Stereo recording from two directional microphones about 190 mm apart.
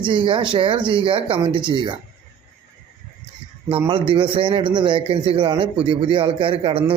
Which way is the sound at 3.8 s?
30° right (ahead or behind).